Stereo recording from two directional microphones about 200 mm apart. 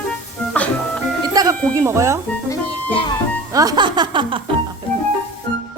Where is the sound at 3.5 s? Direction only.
15° right (ahead or behind).